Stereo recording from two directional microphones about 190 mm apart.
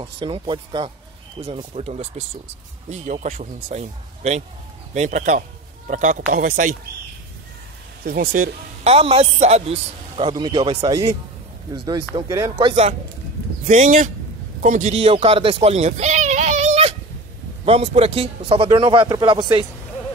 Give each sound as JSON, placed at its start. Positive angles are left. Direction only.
{"t": 0.0, "sound": "a man's voice", "side_deg": -25}
{"t": 8.0, "sound": "speech", "side_deg": -50}
{"t": 8.8, "sound": "a man's voice", "side_deg": -30}